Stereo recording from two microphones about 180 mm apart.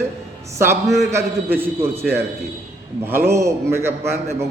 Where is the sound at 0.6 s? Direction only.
15° right (ahead or behind).